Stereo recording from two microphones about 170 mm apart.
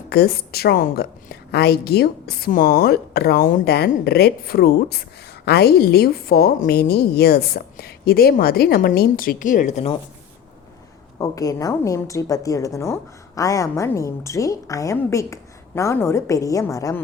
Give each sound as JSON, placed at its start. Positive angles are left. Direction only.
{"t": 0.1, "sound": "a woman's voice", "side_deg": 65}
{"t": 11.2, "sound": "a woman's voice", "side_deg": 20}